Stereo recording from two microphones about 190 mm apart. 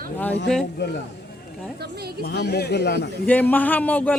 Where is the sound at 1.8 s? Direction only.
60° right (ahead or behind).